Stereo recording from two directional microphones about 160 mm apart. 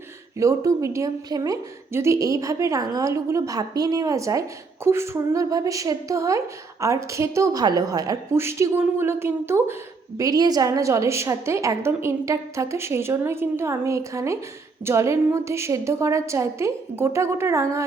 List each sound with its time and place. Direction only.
0.3 s a woman's voice: 20° right (ahead or behind)